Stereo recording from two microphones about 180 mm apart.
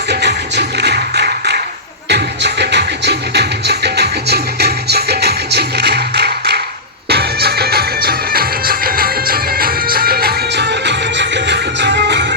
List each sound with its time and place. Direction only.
0.1 s music: 70° right (ahead or behind)